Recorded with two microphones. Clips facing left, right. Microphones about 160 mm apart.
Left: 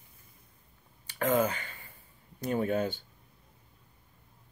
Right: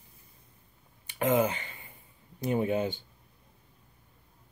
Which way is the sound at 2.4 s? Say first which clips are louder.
Right 1 dB; 15° right (ahead or behind).